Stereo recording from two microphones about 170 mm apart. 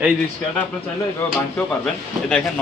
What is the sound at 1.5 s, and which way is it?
Speech, 5° left (ahead or behind).